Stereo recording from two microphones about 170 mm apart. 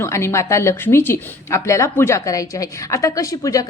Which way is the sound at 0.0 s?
15° left (ahead or behind).